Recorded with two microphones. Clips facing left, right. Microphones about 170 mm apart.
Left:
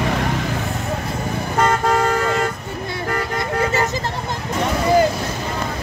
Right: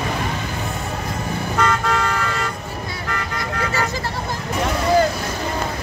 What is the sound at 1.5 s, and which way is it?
Car, 45° left (ahead or behind).